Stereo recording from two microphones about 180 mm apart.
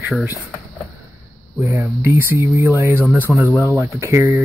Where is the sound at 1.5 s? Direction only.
15° right (ahead or behind).